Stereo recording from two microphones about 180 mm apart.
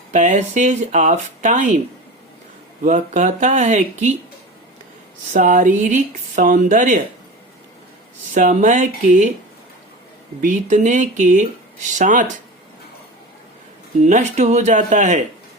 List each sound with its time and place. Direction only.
0.1 s speech: 40° right (ahead or behind)
2.8 s speech: 45° right (ahead or behind)
5.3 s speech: 45° right (ahead or behind)
8.3 s speech: 45° right (ahead or behind)
10.4 s speech: 45° right (ahead or behind)
14.0 s speech: 40° right (ahead or behind)